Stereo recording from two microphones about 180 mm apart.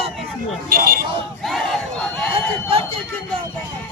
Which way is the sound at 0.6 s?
55° right (ahead or behind).